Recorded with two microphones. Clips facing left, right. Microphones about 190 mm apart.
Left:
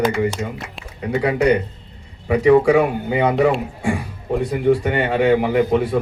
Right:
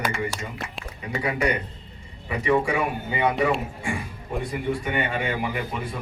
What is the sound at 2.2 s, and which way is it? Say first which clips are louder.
A man's voice: left 10 dB; 75° left (ahead or behind).